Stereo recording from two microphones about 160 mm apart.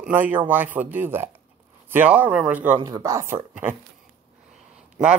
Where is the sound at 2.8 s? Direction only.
20° right (ahead or behind).